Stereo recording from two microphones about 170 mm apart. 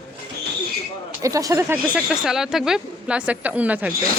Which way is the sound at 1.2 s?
20° right (ahead or behind).